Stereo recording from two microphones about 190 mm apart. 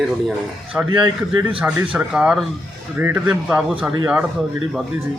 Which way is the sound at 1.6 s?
5° right (ahead or behind).